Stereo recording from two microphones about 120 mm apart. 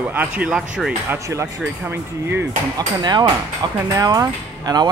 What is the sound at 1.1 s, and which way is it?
Speech, 25° right (ahead or behind).